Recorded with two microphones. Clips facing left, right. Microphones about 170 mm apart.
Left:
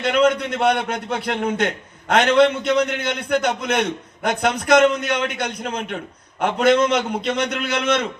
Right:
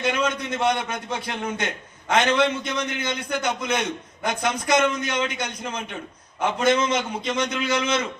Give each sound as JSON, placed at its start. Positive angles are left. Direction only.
{"t": 0.0, "sound": "a man's voice", "side_deg": 65}